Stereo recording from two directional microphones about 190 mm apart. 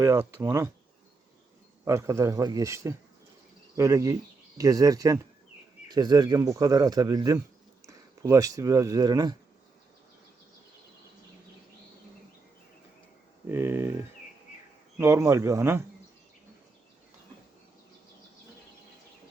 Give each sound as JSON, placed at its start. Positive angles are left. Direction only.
{"t": 0.0, "sound": "speech", "side_deg": -15}
{"t": 1.8, "sound": "speech", "side_deg": -15}
{"t": 13.5, "sound": "a sound", "side_deg": -10}
{"t": 14.9, "sound": "speech", "side_deg": -15}